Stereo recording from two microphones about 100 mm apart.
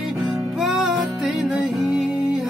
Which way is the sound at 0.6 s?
Centre (ahead or behind).